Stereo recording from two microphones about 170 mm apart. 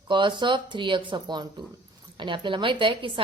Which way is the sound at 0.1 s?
30° right (ahead or behind).